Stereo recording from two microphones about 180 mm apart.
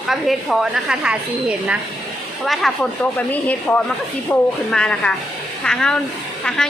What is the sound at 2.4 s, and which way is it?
A woman's voice, centre (ahead or behind).